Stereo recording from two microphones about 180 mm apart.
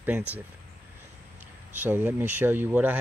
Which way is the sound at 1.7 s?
10° right (ahead or behind).